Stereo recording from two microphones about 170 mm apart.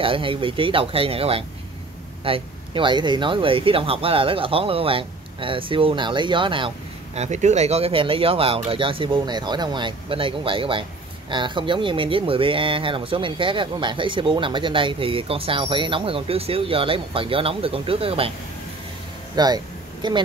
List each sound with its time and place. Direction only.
0.0 s speech: 30° right (ahead or behind)
7.2 s speech: 40° right (ahead or behind)
19.3 s a sound: 25° right (ahead or behind)